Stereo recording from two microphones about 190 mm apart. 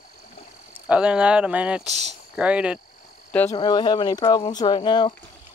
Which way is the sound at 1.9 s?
35° right (ahead or behind).